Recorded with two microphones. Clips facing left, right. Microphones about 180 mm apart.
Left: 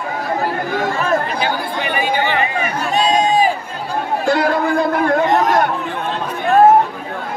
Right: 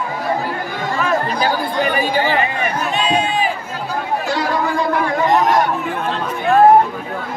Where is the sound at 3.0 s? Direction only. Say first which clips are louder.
Left 6 dB; 40° left (ahead or behind).